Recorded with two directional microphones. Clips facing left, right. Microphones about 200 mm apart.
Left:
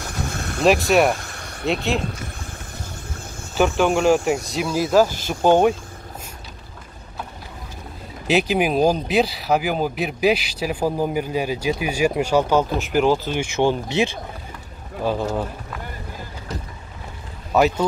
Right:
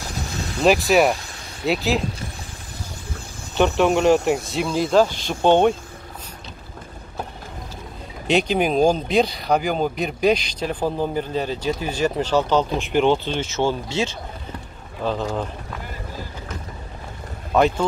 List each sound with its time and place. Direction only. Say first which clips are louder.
0.0 s vehicle: left 1 dB; 55° left (ahead or behind)
0.7 s speech: even; centre (ahead or behind)
1.1 s vehicle: left 1 dB; 55° left (ahead or behind)
1.7 s speech: right 1 dB; centre (ahead or behind)
3.5 s speech: right 1 dB; centre (ahead or behind)
8.3 s speech: even; 5° left (ahead or behind)
17.5 s speech: even; 5° left (ahead or behind)